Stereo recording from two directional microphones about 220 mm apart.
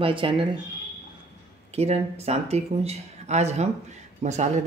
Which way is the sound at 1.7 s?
30° right (ahead or behind).